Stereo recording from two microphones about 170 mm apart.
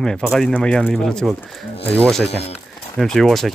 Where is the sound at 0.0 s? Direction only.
5° left (ahead or behind).